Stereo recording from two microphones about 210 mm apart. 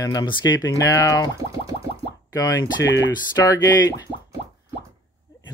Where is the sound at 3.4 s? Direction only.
15° left (ahead or behind).